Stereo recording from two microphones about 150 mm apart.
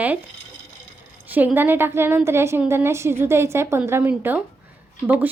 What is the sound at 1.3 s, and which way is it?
A woman's voice, 10° right (ahead or behind).